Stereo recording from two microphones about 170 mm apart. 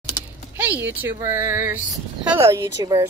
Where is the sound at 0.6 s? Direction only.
10° right (ahead or behind).